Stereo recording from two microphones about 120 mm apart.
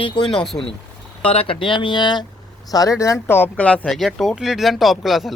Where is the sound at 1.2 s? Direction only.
50° left (ahead or behind).